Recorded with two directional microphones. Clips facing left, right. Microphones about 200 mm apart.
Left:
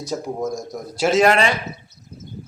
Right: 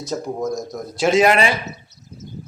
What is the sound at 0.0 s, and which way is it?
Speech, 10° left (ahead or behind).